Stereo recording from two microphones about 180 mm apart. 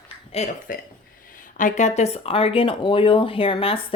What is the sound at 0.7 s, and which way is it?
Speech, 50° left (ahead or behind).